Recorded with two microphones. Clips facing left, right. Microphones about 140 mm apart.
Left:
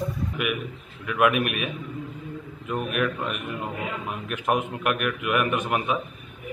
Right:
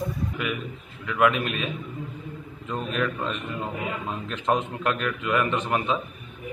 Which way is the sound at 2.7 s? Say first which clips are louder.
Left 1 dB; 15° left (ahead or behind).